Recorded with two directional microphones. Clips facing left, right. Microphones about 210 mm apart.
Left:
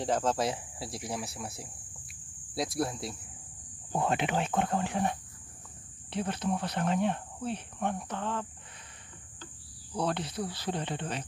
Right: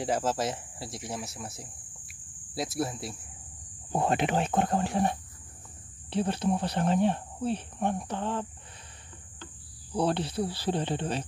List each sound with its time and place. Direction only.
0.0 s speech: 5° right (ahead or behind)
3.9 s speech: 40° right (ahead or behind)
9.9 s cricket: 30° right (ahead or behind)